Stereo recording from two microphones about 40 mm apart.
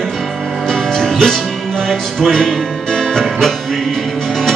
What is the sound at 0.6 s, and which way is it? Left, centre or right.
Music, centre.